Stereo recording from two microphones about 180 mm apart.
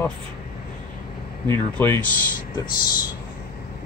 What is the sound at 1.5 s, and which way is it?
Speech, 15° left (ahead or behind).